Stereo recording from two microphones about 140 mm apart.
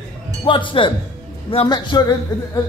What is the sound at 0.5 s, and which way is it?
A man's voice, 35° left (ahead or behind).